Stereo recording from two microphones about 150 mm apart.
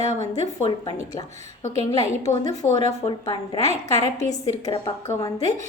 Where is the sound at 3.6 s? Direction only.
45° right (ahead or behind).